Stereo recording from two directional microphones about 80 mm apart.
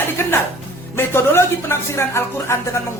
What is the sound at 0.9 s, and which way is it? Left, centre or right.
A woman's voice, left.